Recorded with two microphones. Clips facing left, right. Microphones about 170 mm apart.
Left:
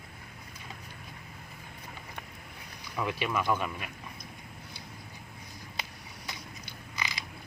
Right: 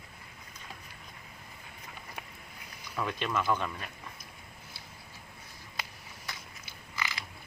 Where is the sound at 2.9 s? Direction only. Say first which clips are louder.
Left 1 dB; 10° left (ahead or behind).